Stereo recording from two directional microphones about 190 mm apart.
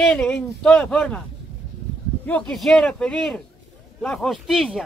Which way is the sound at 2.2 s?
5° left (ahead or behind).